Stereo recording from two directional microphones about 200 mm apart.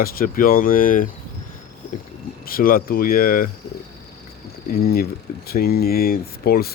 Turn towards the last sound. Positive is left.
turn(degrees=50)  # may be behind; listen again after turning